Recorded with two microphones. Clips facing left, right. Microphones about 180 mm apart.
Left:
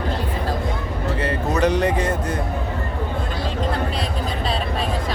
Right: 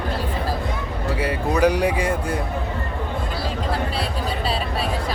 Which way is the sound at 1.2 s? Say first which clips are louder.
Right 2 dB; 10° right (ahead or behind).